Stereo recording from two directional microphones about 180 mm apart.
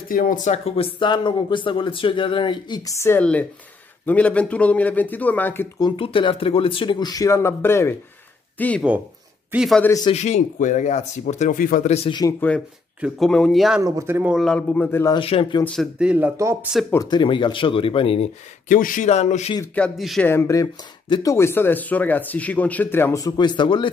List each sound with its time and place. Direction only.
0.1 s speech: 45° left (ahead or behind); by 5.7 s 10° left (ahead or behind)
5.8 s speech: 25° left (ahead or behind); by 8.8 s 10° left (ahead or behind)
9.5 s a man's voice: 5° right (ahead or behind)
9.8 s speech: 15° left (ahead or behind)
10.1 s speech: 40° left (ahead or behind)
12.2 s a man's voice: 15° left (ahead or behind)
13.8 s a man's voice: 15° right (ahead or behind); by 15.1 s 15° left (ahead or behind)
15.1 s speech: 30° left (ahead or behind)
15.6 s a man's voice: 5° left (ahead or behind)
16.9 s speech: 20° left (ahead or behind)
18.7 s speech: 50° left (ahead or behind)
19.7 s speech: 5° left (ahead or behind)
20.2 s speech: 15° left (ahead or behind)